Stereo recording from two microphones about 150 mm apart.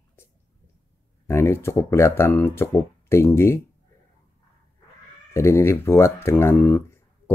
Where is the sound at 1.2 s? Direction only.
15° left (ahead or behind).